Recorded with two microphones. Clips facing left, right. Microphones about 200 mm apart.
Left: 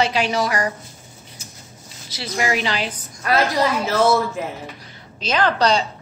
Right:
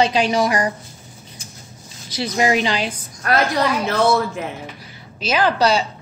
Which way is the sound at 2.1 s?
15° right (ahead or behind).